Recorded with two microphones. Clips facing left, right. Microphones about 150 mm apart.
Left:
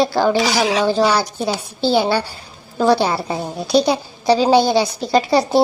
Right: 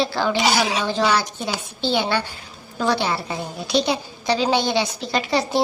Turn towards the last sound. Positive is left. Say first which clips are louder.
# left 6 dB
turn(degrees=40)  # may be behind; listen again after turning